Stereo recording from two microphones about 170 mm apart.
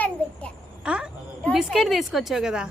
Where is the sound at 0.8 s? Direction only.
5° right (ahead or behind).